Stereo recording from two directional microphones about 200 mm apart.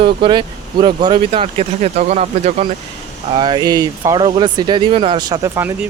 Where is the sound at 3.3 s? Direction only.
20° right (ahead or behind).